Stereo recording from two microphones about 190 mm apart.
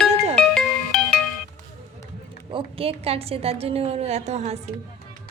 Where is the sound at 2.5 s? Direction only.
30° right (ahead or behind).